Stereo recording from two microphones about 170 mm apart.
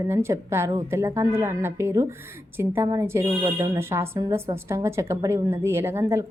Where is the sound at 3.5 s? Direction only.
30° right (ahead or behind).